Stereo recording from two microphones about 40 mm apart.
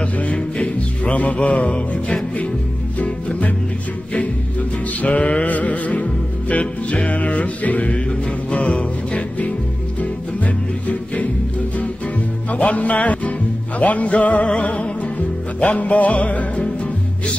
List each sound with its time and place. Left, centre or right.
0.0 s music: left
5.0 s music: left
12.4 s music: left